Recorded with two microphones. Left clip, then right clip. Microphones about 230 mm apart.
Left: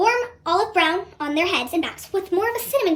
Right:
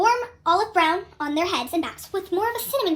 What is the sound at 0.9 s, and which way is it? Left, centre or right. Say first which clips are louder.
A child's voice: left 1 dB; right.